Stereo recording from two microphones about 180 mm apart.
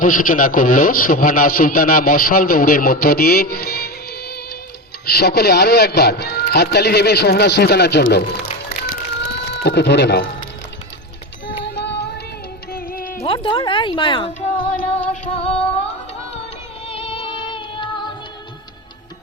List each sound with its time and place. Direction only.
0.0 s a man's voice: 50° left (ahead or behind); by 8.0 s 70° left (ahead or behind)
8.9 s a sound: 65° left (ahead or behind)
11.7 s music: 70° left (ahead or behind)
12.7 s music: 55° left (ahead or behind)
13.2 s speech: 30° left (ahead or behind)
16.8 s music: 30° left (ahead or behind)